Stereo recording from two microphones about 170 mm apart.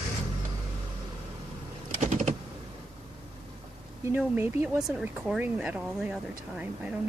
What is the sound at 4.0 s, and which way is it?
Speech, 15° right (ahead or behind).